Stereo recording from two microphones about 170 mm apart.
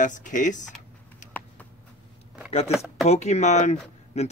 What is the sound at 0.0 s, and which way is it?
Speech, 50° left (ahead or behind).